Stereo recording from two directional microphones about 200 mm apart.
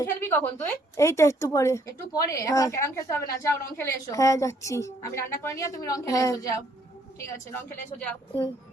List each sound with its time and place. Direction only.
0.0 s a woman's voice: 10° left (ahead or behind)